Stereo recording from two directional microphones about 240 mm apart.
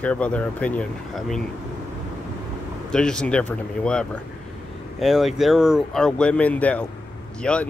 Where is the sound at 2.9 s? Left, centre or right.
Centre.